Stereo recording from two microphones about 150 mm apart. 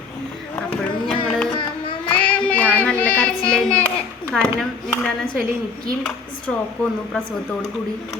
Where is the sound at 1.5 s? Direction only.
35° left (ahead or behind).